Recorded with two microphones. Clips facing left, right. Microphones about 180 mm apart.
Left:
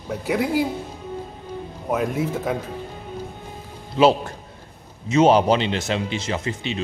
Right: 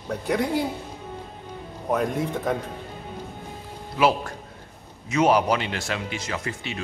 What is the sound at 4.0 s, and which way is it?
Speech, 25° left (ahead or behind).